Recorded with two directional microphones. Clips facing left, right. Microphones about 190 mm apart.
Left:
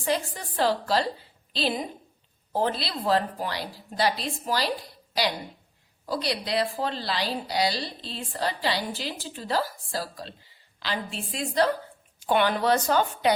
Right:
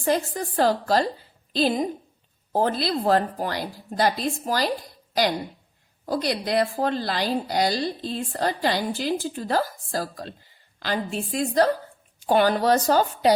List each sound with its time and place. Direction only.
0.0 s speech: 45° right (ahead or behind)